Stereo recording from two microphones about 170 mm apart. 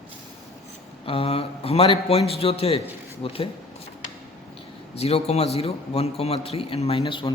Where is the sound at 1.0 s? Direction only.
35° left (ahead or behind).